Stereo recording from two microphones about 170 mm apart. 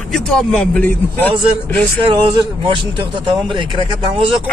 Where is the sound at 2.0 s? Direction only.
30° right (ahead or behind).